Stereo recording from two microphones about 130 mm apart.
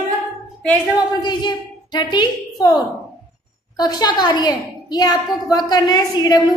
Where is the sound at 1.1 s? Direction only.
35° left (ahead or behind).